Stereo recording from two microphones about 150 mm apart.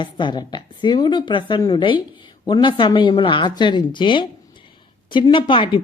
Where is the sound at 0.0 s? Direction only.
30° left (ahead or behind).